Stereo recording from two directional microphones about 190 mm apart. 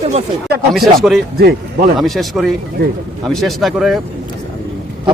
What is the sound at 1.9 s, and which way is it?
Speech, centre (ahead or behind).